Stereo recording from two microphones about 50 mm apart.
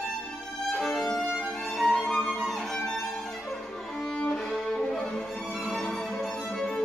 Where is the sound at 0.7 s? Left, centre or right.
Centre.